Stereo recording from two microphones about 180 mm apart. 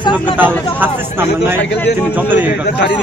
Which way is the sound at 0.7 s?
10° right (ahead or behind).